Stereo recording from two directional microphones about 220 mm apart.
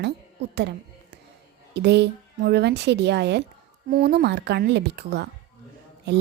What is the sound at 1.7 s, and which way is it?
Speech, 50° right (ahead or behind).